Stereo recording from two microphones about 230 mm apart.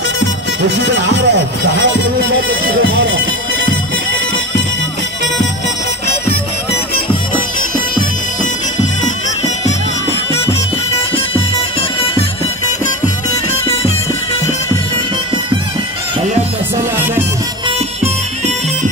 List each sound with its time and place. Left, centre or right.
0.7 s speech: right